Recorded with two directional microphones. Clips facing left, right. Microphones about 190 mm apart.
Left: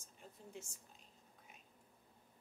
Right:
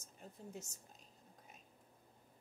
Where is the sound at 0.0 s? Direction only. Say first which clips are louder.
Right 4 dB; 40° right (ahead or behind).